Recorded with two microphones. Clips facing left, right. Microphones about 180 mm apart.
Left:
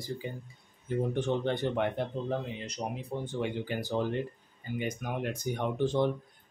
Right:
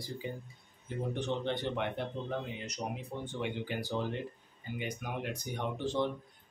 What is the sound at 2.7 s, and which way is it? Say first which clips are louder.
Speech: left 3 dB; 35° left (ahead or behind).